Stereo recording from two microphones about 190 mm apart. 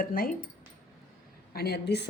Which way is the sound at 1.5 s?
55° left (ahead or behind).